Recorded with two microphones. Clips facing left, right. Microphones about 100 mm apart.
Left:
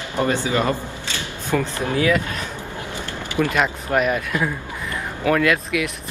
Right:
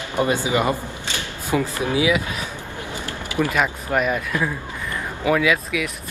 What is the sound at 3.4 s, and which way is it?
A man's voice, centre (ahead or behind).